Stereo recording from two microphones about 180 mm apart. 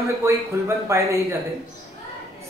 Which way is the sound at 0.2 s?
15° right (ahead or behind).